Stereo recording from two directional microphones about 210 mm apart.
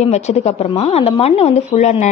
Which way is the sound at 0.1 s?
30° left (ahead or behind).